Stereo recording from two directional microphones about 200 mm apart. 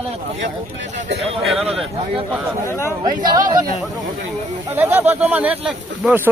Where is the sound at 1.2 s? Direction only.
Centre (ahead or behind).